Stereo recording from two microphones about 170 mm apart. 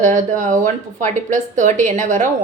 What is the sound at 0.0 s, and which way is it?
Speech, 50° right (ahead or behind).